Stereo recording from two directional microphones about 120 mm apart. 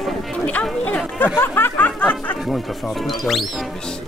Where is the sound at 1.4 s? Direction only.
15° left (ahead or behind).